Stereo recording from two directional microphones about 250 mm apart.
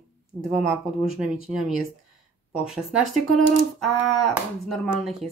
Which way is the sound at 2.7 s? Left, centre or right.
Centre.